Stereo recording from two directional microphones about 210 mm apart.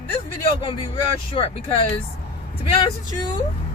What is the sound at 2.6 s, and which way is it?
Speech, 25° left (ahead or behind).